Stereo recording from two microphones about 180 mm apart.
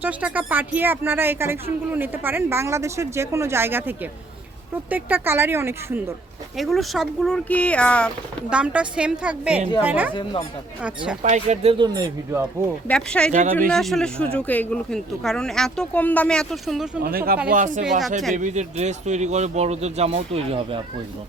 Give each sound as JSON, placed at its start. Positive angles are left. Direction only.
{"t": 0.0, "sound": "speech", "side_deg": -10}
{"t": 6.6, "sound": "speech", "side_deg": 0}
{"t": 8.4, "sound": "speech", "side_deg": -5}
{"t": 11.2, "sound": "speech", "side_deg": -40}
{"t": 12.9, "sound": "speech", "side_deg": 5}
{"t": 13.3, "sound": "speech", "side_deg": -40}
{"t": 13.7, "sound": "speech", "side_deg": 0}
{"t": 17.0, "sound": "speech", "side_deg": -55}